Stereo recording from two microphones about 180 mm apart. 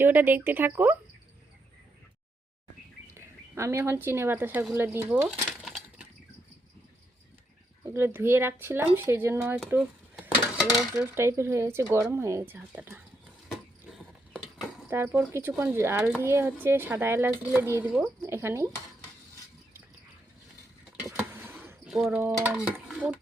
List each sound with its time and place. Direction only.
0.0 s speech: 10° right (ahead or behind)
3.2 s speech: 15° right (ahead or behind)
5.3 s breaking: centre (ahead or behind)
7.9 s speech: 15° right (ahead or behind)
10.6 s dishes: centre (ahead or behind)
10.9 s speech: 15° right (ahead or behind)
13.5 s a sound: centre (ahead or behind)
14.8 s speech: 15° right (ahead or behind)
21.4 s basketball bounce: 10° right (ahead or behind)
22.1 s speech: 10° right (ahead or behind)